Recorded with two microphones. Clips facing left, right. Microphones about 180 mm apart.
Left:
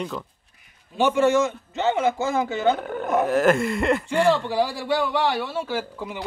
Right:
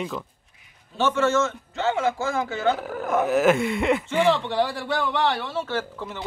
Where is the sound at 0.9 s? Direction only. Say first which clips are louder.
Left 3 dB; 15° left (ahead or behind).